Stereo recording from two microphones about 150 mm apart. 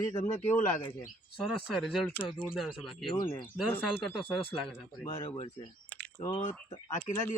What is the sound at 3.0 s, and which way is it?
Speech, 35° left (ahead or behind).